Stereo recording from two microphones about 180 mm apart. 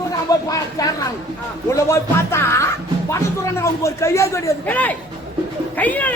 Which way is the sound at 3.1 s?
15° left (ahead or behind).